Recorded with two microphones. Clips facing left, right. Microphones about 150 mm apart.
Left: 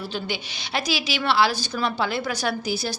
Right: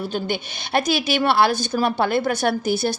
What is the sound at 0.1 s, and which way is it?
A woman's voice, 50° right (ahead or behind).